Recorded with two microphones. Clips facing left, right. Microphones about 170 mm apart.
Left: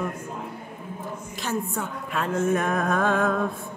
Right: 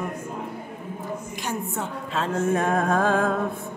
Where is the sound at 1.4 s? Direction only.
25° right (ahead or behind).